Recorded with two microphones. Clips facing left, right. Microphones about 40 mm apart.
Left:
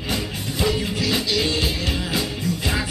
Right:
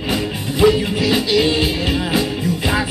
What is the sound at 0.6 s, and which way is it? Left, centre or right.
Music, centre.